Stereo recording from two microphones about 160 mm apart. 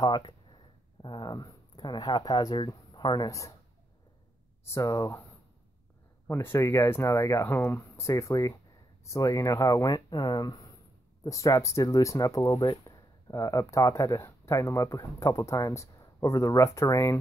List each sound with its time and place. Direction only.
0.0 s speech: 30° left (ahead or behind)
4.7 s speech: 20° left (ahead or behind)
6.2 s speech: 15° left (ahead or behind)